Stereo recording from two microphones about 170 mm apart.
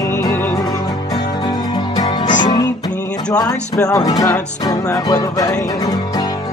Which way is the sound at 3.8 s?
20° left (ahead or behind).